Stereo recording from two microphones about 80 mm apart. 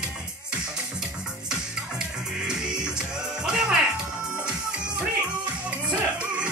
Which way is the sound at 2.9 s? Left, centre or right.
Centre.